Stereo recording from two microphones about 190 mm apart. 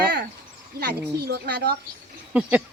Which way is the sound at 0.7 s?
55° right (ahead or behind).